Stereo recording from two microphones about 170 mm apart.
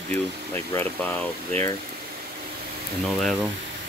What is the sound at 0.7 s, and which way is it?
Speech, 10° left (ahead or behind).